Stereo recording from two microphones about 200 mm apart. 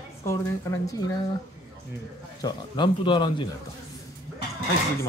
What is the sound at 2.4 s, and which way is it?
Speech, 25° left (ahead or behind).